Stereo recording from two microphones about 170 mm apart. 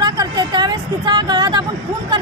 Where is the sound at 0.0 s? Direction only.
25° right (ahead or behind).